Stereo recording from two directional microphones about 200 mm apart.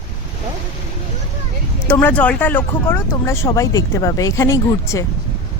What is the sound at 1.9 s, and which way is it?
Speech, 10° left (ahead or behind).